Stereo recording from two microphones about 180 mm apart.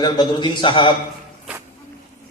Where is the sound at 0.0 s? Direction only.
25° left (ahead or behind).